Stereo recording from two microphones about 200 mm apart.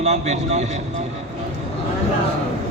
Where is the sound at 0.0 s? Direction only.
35° right (ahead or behind).